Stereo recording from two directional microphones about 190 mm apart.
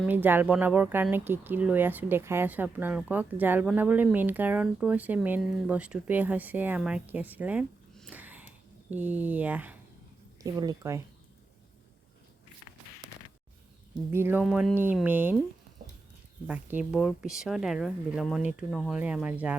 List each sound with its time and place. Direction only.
0.0 s speech: 10° right (ahead or behind)
8.1 s a sound: 10° right (ahead or behind)
8.9 s speech: 10° right (ahead or behind)
10.4 s speech: 20° right (ahead or behind)
14.1 s speech: 10° right (ahead or behind)
14.4 s speech: centre (ahead or behind)
16.5 s speech: 10° right (ahead or behind)